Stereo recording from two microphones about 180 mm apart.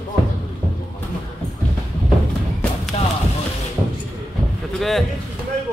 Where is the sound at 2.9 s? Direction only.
35° left (ahead or behind).